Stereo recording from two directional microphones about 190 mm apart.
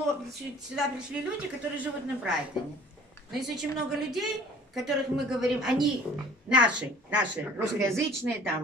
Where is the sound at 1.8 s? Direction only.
5° right (ahead or behind).